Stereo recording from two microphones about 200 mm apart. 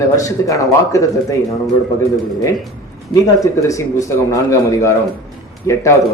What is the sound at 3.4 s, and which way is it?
A man's voice, 15° left (ahead or behind).